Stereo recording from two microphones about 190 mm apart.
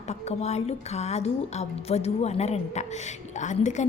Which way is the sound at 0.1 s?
35° left (ahead or behind).